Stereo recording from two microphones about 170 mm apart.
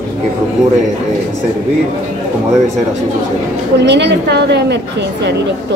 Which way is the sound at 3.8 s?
90° right.